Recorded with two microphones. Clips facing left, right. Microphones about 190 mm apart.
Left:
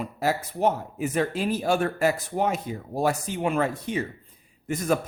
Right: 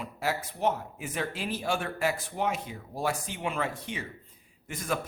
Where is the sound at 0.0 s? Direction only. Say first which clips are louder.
Left 6 dB; 40° left (ahead or behind).